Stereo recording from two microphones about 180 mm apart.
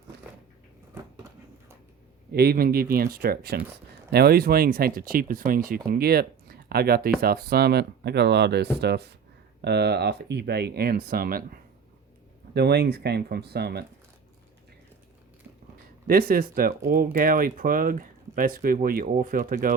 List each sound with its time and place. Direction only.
2.3 s speech: 60° right (ahead or behind)
12.5 s speech: 65° right (ahead or behind)
16.0 s speech: 55° right (ahead or behind)